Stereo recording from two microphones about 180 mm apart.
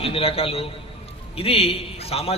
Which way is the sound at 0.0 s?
30° left (ahead or behind).